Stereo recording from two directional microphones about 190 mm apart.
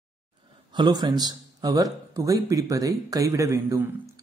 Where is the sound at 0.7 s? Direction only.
20° right (ahead or behind).